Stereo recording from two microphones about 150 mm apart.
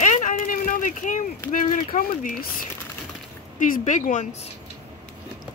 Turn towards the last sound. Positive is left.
turn(degrees=55)  # may be behind; listen again after turning